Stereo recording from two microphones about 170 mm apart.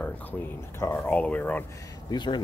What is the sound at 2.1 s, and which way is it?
Speech, 25° left (ahead or behind).